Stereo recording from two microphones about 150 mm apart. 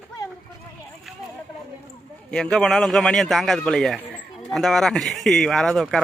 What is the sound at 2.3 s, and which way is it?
Speech, 5° left (ahead or behind).